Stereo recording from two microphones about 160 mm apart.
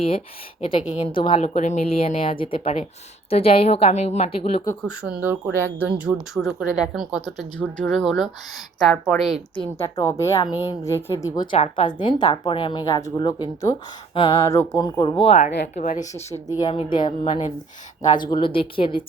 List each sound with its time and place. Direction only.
0.6 s speech: 30° left (ahead or behind)
1.4 s speech: 45° left (ahead or behind)
4.9 s a woman's voice: 5° right (ahead or behind)
9.6 s a woman's voice: 15° left (ahead or behind)
11.5 s speech: 40° left (ahead or behind)
11.9 s a woman's voice: 25° left (ahead or behind)
14.4 s a woman's voice: 15° left (ahead or behind); by 15.5 s 40° left (ahead or behind)
15.6 s a woman's voice: 55° left (ahead or behind)
16.5 s a woman's voice: 25° left (ahead or behind)